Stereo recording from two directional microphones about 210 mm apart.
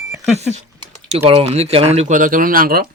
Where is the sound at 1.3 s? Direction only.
25° right (ahead or behind); by 2.9 s 45° right (ahead or behind).